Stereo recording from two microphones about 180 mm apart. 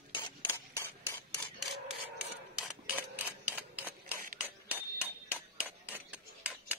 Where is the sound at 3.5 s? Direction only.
10° right (ahead or behind).